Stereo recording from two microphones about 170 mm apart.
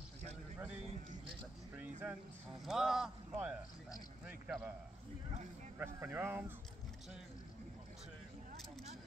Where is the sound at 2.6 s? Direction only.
Centre (ahead or behind).